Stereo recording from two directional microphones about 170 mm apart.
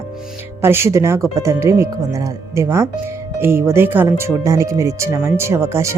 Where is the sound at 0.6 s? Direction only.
15° right (ahead or behind).